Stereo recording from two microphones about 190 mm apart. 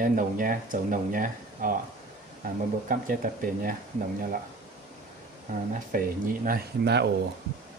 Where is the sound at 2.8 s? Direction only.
45° right (ahead or behind).